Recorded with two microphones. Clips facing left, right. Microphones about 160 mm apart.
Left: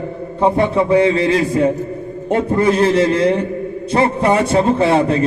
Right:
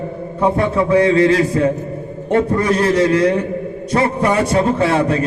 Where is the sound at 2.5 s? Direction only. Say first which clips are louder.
Left 2 dB; 30° left (ahead or behind).